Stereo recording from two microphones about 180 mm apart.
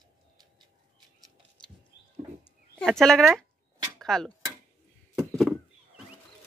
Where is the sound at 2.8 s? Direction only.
5° left (ahead or behind).